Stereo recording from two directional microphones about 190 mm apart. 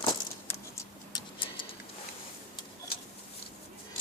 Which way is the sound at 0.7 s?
20° left (ahead or behind).